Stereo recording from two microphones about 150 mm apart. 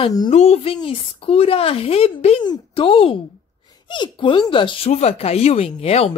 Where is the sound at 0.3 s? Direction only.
45° left (ahead or behind).